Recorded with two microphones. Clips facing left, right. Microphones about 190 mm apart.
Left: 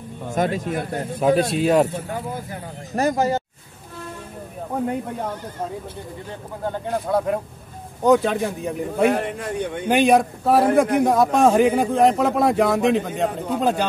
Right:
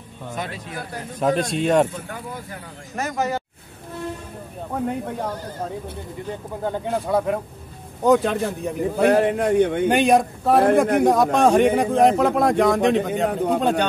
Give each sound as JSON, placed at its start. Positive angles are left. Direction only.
{"t": 0.3, "sound": "speech", "side_deg": 45}
{"t": 1.1, "sound": "a man's voice", "side_deg": 5}
{"t": 3.0, "sound": "speech", "side_deg": 30}
{"t": 7.1, "sound": "a man's voice", "side_deg": -10}
{"t": 9.2, "sound": "a man's voice", "side_deg": -60}
{"t": 9.8, "sound": "a man's voice", "side_deg": 0}